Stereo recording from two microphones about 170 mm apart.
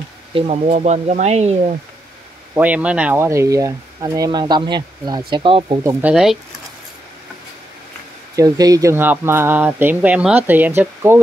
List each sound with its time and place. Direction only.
0.3 s speech: 35° right (ahead or behind)
2.5 s speech: 10° right (ahead or behind); by 5.8 s 30° right (ahead or behind)
5.9 s speech: 10° right (ahead or behind)
8.4 s speech: 20° right (ahead or behind)